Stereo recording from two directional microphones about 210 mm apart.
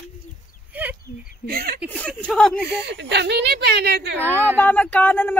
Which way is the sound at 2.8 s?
55° right (ahead or behind).